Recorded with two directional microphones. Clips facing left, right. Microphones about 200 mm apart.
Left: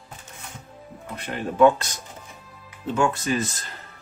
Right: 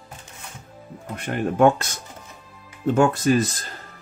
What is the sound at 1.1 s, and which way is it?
Speech, 50° right (ahead or behind).